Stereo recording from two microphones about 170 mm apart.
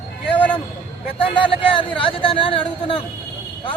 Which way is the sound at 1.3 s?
30° left (ahead or behind).